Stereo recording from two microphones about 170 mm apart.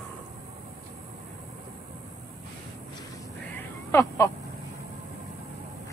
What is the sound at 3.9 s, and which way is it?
Caw, 20° left (ahead or behind).